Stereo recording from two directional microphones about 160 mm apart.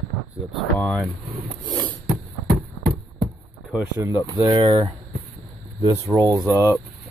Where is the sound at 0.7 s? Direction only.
Centre (ahead or behind).